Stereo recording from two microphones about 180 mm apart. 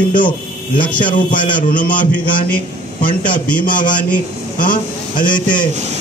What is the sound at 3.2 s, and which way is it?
Speech, 50° left (ahead or behind).